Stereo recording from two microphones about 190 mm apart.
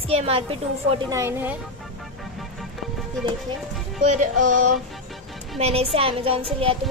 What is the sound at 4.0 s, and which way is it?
Speech, 40° right (ahead or behind).